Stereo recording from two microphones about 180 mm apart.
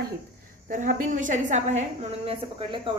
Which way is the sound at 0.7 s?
45° right (ahead or behind).